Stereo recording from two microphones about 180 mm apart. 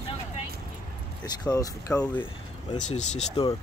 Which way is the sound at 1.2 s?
20° left (ahead or behind).